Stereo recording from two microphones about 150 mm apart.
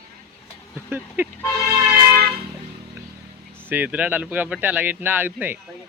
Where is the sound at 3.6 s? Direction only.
10° right (ahead or behind).